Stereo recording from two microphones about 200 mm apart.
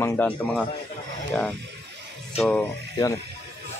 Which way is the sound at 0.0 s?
10° left (ahead or behind).